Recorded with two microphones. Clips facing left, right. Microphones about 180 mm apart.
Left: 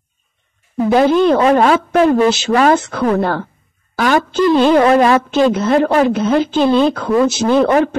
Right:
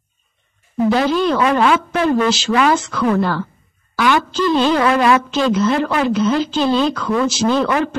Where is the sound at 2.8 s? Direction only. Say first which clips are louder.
Left 2 dB; 55° left (ahead or behind).